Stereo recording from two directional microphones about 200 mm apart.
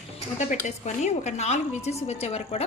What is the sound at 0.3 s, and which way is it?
Speech, 35° left (ahead or behind).